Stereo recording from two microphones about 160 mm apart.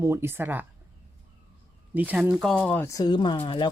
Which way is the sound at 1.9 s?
10° right (ahead or behind).